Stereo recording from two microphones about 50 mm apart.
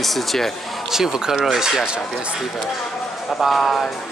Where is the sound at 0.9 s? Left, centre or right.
Centre.